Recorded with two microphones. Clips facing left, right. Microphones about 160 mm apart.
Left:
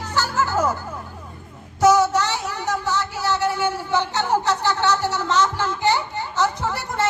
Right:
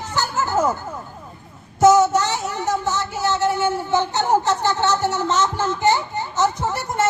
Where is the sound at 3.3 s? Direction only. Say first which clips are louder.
Right 3 dB; 45° right (ahead or behind).